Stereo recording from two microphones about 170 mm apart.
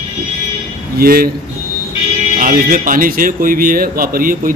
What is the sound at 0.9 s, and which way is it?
Speech, 60° right (ahead or behind).